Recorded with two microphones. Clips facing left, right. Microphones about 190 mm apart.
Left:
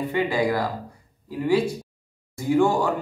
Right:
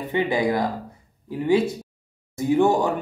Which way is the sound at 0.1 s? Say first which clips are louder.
Right 3 dB; 20° right (ahead or behind).